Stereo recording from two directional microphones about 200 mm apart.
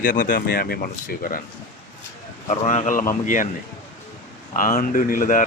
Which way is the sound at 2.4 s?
35° left (ahead or behind).